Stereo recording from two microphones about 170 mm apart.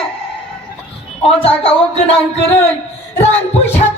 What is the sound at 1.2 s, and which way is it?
Music, 35° left (ahead or behind).